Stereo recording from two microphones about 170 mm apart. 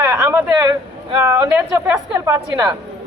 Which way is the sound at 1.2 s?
15° right (ahead or behind).